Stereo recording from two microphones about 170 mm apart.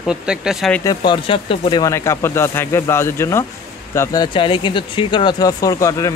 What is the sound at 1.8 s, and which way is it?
Speech, 20° left (ahead or behind).